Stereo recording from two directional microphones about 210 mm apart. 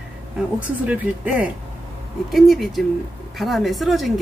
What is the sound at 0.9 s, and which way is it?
A woman's voice, 5° right (ahead or behind).